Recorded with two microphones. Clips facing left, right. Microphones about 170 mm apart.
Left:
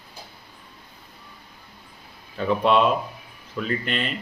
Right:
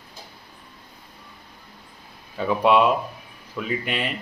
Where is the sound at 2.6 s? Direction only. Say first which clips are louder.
Right 2 dB; 10° right (ahead or behind).